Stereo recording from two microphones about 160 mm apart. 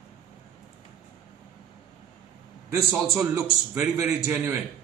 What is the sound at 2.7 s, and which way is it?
A man's voice, 15° right (ahead or behind).